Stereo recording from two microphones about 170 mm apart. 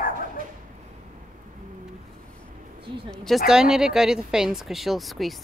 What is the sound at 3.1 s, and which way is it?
Speech, 5° left (ahead or behind).